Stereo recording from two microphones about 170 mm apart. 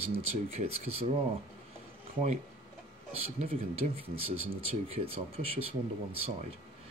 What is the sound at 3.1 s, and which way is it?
Speech, 35° right (ahead or behind).